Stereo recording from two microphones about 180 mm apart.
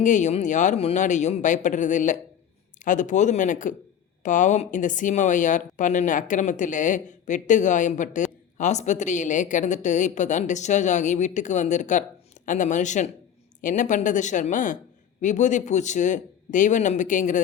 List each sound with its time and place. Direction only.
0.0 s a woman's voice: 45° left (ahead or behind)